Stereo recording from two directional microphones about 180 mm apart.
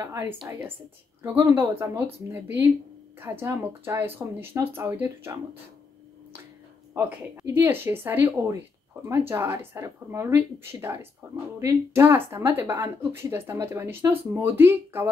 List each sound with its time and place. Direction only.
0.0 s speech: 15° right (ahead or behind)
3.2 s speech: 15° right (ahead or behind)
6.9 s speech: 15° right (ahead or behind)